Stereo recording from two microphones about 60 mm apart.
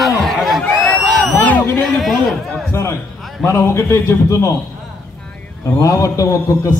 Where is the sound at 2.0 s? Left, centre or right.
Centre.